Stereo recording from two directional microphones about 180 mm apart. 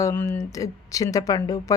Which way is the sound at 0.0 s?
15° left (ahead or behind).